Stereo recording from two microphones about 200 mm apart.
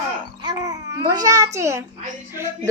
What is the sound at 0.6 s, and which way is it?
A child's voice, 20° right (ahead or behind).